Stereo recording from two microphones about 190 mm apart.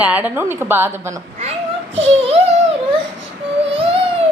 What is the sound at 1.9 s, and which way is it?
Speech, 30° right (ahead or behind).